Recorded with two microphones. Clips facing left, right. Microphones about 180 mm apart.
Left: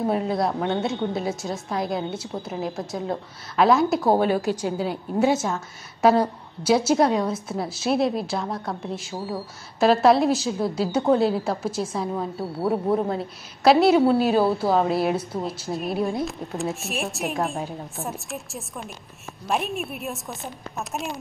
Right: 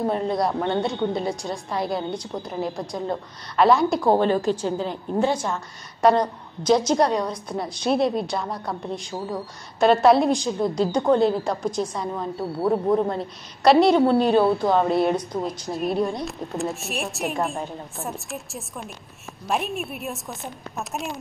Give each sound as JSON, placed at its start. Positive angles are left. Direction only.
{"t": 0.1, "sound": "a woman's voice", "side_deg": 0}